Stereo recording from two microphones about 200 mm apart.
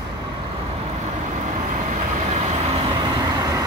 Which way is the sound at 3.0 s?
20° right (ahead or behind).